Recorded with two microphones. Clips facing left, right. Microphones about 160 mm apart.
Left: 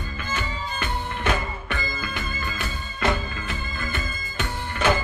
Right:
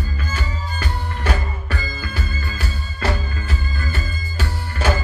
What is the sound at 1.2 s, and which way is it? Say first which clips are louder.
Music: right 1 dB; 35° right (ahead or behind).